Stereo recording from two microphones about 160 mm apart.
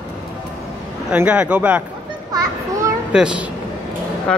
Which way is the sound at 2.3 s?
20° right (ahead or behind).